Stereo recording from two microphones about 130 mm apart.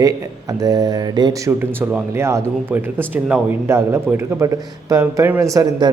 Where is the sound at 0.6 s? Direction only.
30° right (ahead or behind).